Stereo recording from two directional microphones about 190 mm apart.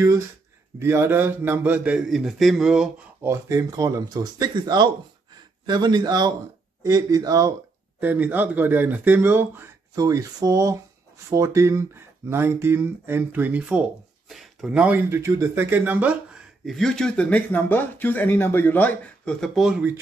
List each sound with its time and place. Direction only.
0.7 s a man's voice: 15° right (ahead or behind)